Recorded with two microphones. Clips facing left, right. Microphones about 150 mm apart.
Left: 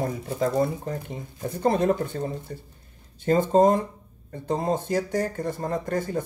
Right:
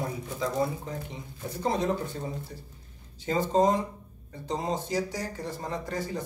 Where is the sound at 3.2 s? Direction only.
50° left (ahead or behind).